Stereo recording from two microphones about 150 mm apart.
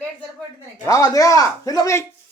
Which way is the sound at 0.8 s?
25° left (ahead or behind).